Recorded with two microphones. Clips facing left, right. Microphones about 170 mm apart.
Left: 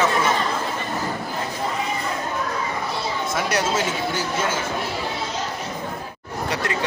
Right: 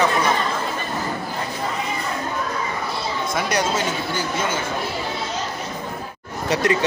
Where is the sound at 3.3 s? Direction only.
5° left (ahead or behind).